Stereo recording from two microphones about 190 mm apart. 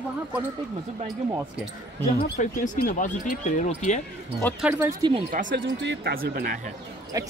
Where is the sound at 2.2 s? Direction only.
45° left (ahead or behind).